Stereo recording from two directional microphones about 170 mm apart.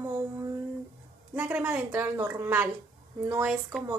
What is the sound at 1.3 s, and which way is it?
A woman's voice, 10° right (ahead or behind).